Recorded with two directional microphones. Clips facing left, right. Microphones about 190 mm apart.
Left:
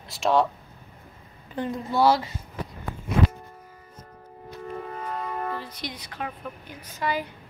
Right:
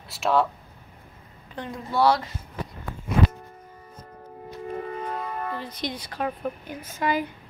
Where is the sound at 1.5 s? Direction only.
Centre (ahead or behind).